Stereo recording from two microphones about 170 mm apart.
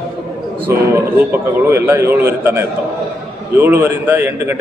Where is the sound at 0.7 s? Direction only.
15° right (ahead or behind).